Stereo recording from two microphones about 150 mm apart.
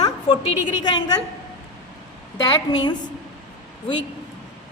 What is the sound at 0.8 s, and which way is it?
Speech, 30° left (ahead or behind).